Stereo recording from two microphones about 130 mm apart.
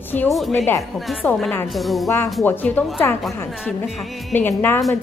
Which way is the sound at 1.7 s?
Centre (ahead or behind).